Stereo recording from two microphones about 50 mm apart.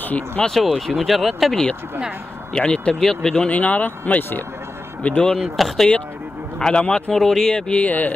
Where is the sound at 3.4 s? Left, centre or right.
Left.